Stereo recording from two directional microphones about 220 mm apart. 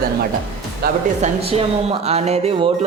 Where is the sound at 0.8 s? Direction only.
30° right (ahead or behind).